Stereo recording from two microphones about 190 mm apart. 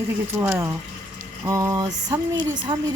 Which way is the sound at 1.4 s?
15° right (ahead or behind).